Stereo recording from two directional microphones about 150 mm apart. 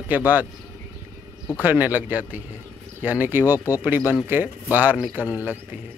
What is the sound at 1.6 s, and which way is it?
Speech, 10° right (ahead or behind).